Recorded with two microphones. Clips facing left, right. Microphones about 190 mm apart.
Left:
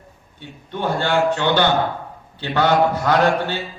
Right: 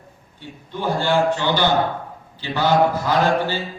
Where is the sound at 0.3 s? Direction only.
60° left (ahead or behind).